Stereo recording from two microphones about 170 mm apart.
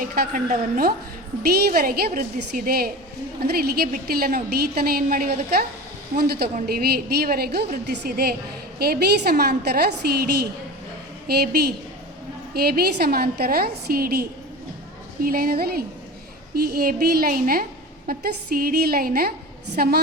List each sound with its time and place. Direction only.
0.0 s a woman's voice: 55° right (ahead or behind)